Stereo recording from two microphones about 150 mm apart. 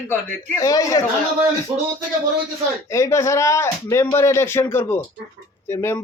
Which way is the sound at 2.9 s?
20° left (ahead or behind).